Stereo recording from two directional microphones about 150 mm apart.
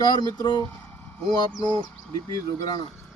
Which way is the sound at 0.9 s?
15° left (ahead or behind).